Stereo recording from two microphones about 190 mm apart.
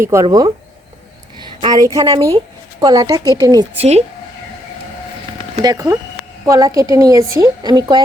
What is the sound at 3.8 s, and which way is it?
Speech, 35° right (ahead or behind).